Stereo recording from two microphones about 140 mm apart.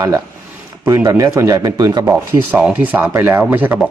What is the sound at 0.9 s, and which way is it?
Speech, 20° right (ahead or behind).